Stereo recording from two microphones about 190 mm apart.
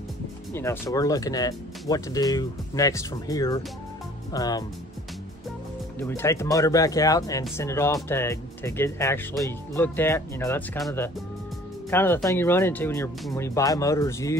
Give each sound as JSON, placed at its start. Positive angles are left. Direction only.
{"t": 0.5, "sound": "speech", "side_deg": 15}
{"t": 5.9, "sound": "speech", "side_deg": 10}
{"t": 11.9, "sound": "speech", "side_deg": 10}